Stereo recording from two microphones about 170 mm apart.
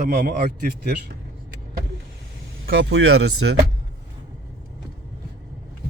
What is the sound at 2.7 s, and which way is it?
Speech, 90° right.